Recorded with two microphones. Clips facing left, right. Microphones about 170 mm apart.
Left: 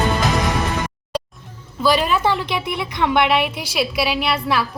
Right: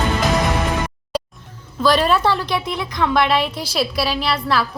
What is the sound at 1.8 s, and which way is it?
Speech, 5° left (ahead or behind).